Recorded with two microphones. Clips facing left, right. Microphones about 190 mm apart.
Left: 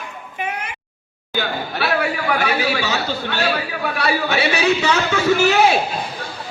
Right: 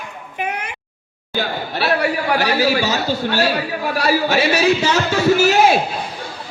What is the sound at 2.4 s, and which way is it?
Speech, 35° right (ahead or behind).